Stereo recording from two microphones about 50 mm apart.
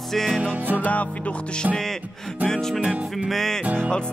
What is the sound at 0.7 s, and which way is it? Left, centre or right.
Music, left.